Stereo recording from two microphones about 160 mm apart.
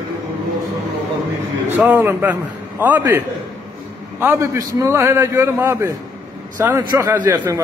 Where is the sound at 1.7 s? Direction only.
10° right (ahead or behind).